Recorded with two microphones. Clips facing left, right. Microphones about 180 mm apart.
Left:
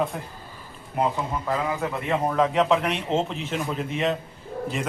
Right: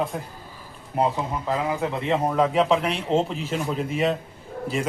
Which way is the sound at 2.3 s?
5° right (ahead or behind).